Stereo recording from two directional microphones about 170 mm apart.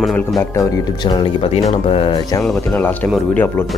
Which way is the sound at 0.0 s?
Centre (ahead or behind).